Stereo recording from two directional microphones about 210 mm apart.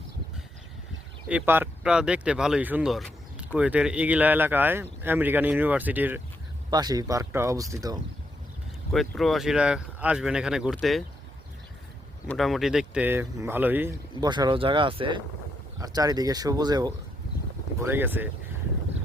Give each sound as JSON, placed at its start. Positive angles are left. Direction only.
{"t": 1.3, "sound": "speech", "side_deg": -10}
{"t": 6.7, "sound": "speech", "side_deg": -20}
{"t": 8.9, "sound": "speech", "side_deg": 0}
{"t": 12.3, "sound": "speech", "side_deg": 0}